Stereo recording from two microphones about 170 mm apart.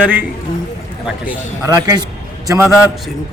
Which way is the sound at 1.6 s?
20° right (ahead or behind).